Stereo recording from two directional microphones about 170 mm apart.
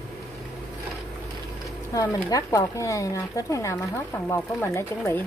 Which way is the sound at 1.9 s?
20° left (ahead or behind).